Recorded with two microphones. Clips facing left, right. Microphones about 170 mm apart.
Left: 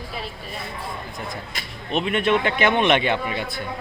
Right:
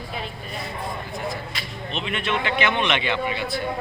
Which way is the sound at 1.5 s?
50° left (ahead or behind).